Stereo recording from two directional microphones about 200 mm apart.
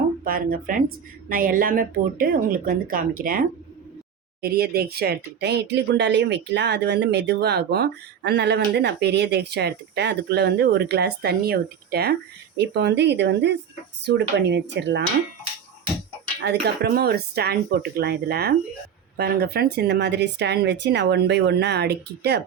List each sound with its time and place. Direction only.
0.3 s speech: 45° right (ahead or behind)
16.4 s speech: 55° right (ahead or behind)